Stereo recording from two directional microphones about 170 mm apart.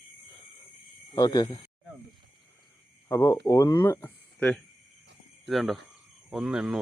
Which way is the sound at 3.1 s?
15° left (ahead or behind).